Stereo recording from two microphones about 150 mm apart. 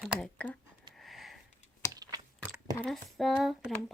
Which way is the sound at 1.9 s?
25° right (ahead or behind).